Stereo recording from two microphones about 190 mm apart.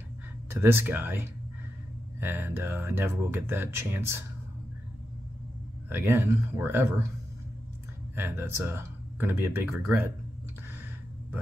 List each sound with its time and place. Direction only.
0.5 s speech: 10° right (ahead or behind)
5.9 s speech: 10° right (ahead or behind)
8.2 s speech: 10° right (ahead or behind)